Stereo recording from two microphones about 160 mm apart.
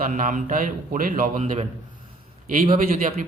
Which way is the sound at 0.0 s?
55° right (ahead or behind).